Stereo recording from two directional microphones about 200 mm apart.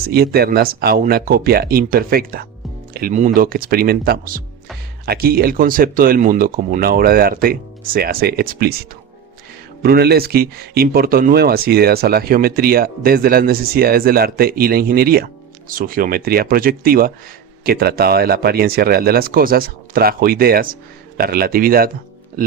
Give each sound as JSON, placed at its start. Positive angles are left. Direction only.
{"t": 0.1, "sound": "speech", "side_deg": -50}